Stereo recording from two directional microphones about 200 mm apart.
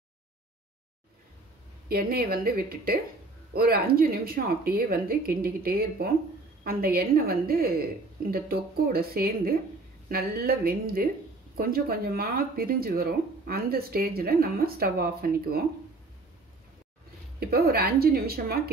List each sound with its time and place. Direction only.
1.9 s speech: 50° right (ahead or behind)
17.4 s speech: 50° right (ahead or behind)